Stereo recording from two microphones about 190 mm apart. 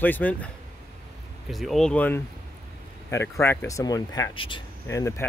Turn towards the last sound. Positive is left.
turn(degrees=15)  # may be behind; listen again after turning